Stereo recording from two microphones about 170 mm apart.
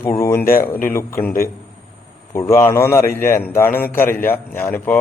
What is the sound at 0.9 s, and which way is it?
Speech, 15° left (ahead or behind).